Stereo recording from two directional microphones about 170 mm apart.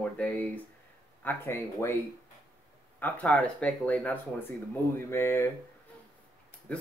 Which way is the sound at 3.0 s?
10° left (ahead or behind).